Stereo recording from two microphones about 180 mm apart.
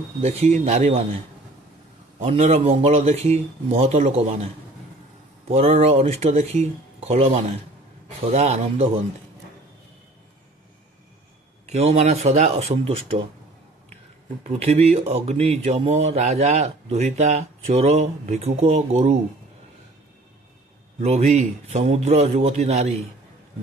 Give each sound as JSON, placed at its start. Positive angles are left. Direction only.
{"t": 0.2, "sound": "speech", "side_deg": -35}
{"t": 2.1, "sound": "speech", "side_deg": -35}
{"t": 5.5, "sound": "speech", "side_deg": -35}
{"t": 11.6, "sound": "speech", "side_deg": -35}
{"t": 14.5, "sound": "speech", "side_deg": -35}
{"t": 21.0, "sound": "speech", "side_deg": -35}